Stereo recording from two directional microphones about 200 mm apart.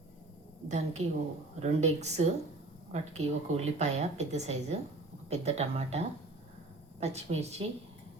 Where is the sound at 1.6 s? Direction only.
35° right (ahead or behind).